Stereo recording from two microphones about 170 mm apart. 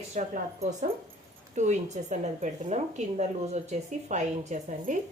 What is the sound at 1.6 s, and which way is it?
Speech, 45° right (ahead or behind).